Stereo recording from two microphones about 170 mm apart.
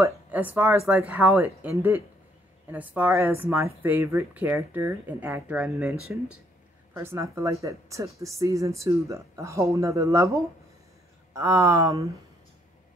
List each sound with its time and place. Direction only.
0.0 s speech: 10° right (ahead or behind)